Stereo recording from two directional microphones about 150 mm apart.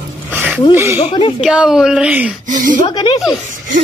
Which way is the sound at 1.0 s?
35° left (ahead or behind).